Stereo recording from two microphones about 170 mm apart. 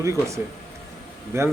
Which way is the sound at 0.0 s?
15° right (ahead or behind).